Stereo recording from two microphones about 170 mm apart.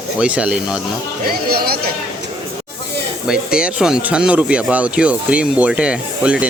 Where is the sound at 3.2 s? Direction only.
5° right (ahead or behind).